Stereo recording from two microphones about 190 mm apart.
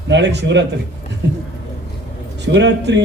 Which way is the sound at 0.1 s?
65° right (ahead or behind).